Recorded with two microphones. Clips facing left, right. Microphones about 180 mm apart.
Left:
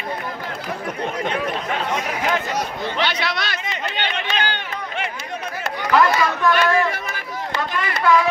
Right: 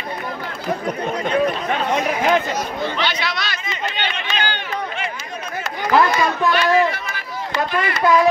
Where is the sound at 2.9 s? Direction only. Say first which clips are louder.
Even; 60° left (ahead or behind).